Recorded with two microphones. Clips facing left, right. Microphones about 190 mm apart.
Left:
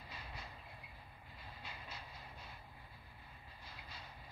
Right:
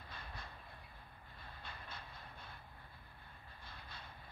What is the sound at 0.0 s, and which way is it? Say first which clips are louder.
Train: even; 10° left (ahead or behind).